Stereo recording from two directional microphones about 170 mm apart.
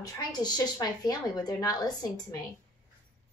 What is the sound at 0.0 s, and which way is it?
A woman's voice, 25° left (ahead or behind).